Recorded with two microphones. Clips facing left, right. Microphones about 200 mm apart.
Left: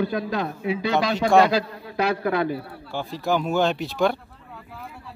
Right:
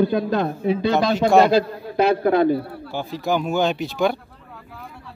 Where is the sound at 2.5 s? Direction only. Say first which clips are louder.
Right 4 dB; centre (ahead or behind).